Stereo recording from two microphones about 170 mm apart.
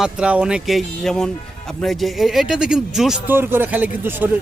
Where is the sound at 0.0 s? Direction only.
5° right (ahead or behind).